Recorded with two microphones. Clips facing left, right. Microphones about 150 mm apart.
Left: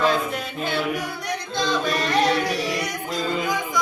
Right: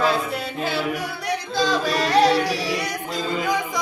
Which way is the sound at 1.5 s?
35° right (ahead or behind).